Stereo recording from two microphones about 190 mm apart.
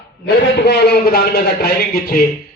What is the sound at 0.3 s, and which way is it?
A man's voice, 60° left (ahead or behind).